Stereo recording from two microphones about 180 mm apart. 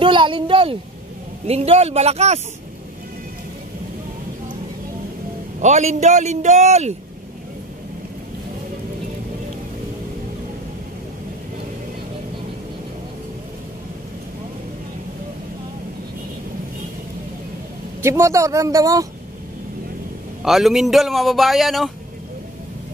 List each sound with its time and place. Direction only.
0.0 s a man's voice: 25° right (ahead or behind)
5.6 s a man's voice: 40° right (ahead or behind)
18.0 s speech: 15° right (ahead or behind)
20.4 s speech: centre (ahead or behind)